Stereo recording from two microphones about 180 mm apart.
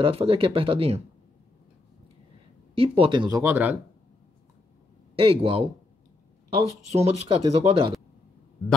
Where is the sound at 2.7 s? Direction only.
30° right (ahead or behind); by 3.7 s 10° right (ahead or behind).